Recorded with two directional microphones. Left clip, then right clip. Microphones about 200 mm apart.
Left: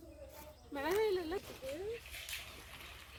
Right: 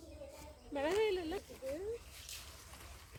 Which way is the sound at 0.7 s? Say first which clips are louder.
Even; 55° left (ahead or behind).